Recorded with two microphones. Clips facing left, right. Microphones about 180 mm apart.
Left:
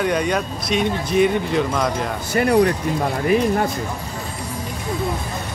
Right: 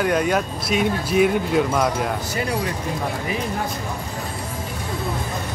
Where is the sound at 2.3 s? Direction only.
60° left (ahead or behind).